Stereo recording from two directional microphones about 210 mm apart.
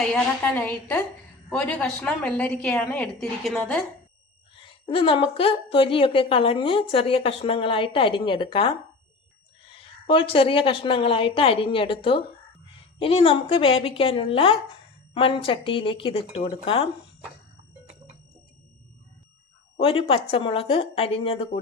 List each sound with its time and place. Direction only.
0.0 s a woman's voice: 5° left (ahead or behind)
4.5 s a woman's voice: 25° left (ahead or behind)
19.8 s a woman's voice: 25° left (ahead or behind)